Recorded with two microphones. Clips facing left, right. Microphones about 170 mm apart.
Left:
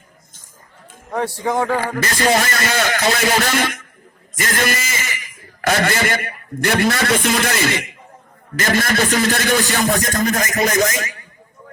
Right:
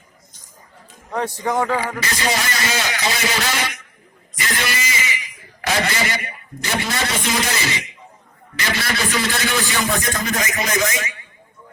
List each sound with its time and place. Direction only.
1.8 s a man's voice: 50° left (ahead or behind)